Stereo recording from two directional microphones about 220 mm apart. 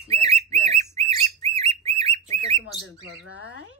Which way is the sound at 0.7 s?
30° right (ahead or behind).